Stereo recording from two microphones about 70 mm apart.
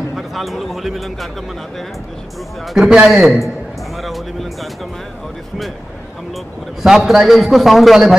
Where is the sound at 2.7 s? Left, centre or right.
Centre.